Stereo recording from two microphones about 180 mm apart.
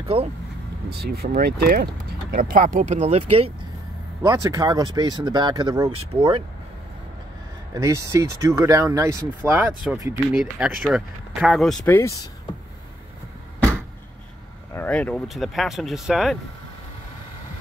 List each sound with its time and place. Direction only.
0.0 s speech: 30° right (ahead or behind)
0.8 s speech: 60° right (ahead or behind); by 3.5 s 35° right (ahead or behind)
4.2 s speech: 20° right (ahead or behind)
7.7 s speech: 15° right (ahead or behind)
10.3 s speech: 5° right (ahead or behind)
11.9 s speech: 15° left (ahead or behind)
14.7 s speech: 10° left (ahead or behind)